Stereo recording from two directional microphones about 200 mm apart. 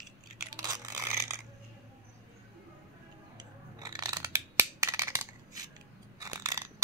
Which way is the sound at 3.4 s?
20° right (ahead or behind).